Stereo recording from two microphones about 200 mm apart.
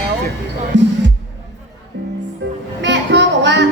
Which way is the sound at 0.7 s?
60° right (ahead or behind).